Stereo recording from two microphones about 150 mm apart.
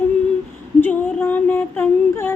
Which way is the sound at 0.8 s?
10° left (ahead or behind).